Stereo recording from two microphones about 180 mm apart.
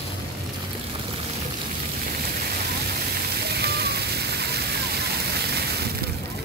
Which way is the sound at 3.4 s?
65° right (ahead or behind).